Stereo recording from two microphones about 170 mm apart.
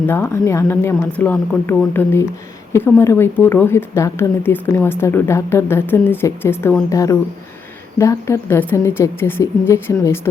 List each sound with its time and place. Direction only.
0.0 s a woman's voice: 15° left (ahead or behind)